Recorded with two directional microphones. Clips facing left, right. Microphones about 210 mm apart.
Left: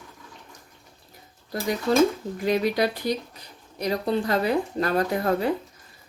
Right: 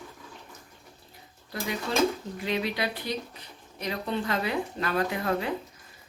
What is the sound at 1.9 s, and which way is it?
Speech, 40° left (ahead or behind).